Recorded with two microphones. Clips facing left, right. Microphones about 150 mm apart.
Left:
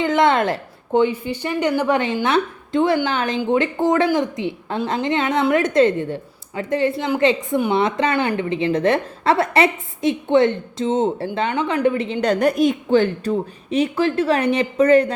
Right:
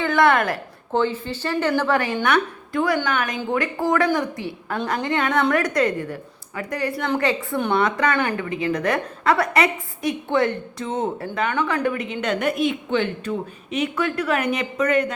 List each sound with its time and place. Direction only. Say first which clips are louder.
0.0 s a woman's voice: left 2 dB; 20° left (ahead or behind)